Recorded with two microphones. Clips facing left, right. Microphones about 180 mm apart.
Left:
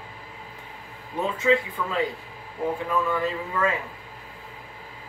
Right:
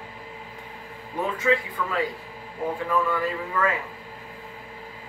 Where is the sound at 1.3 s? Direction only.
25° left (ahead or behind).